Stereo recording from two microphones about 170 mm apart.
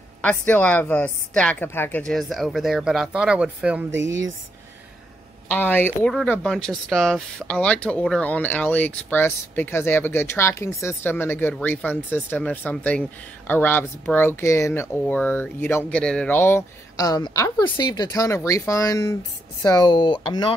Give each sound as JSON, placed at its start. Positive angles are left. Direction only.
{"t": 0.2, "sound": "a woman's voice", "side_deg": 10}
{"t": 3.9, "sound": "speech", "side_deg": -90}
{"t": 5.5, "sound": "speech", "side_deg": 10}